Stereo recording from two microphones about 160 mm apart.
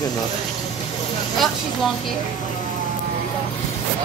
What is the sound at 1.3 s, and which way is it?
Speech, centre (ahead or behind).